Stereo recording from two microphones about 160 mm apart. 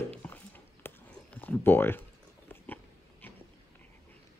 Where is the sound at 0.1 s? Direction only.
10° left (ahead or behind).